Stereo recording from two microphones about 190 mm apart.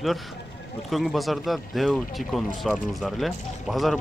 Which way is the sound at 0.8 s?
Centre (ahead or behind).